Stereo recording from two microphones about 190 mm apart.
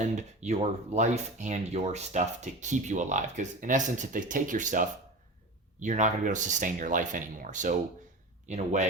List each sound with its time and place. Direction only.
0.0 s speech: 35° right (ahead or behind)